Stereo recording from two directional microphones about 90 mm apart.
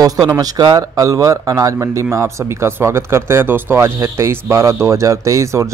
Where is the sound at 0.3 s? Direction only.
45° right (ahead or behind).